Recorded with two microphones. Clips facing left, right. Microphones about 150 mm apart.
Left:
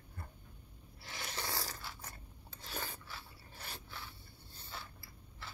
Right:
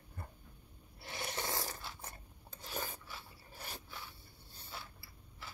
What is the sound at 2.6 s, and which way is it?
Filing, 15° right (ahead or behind).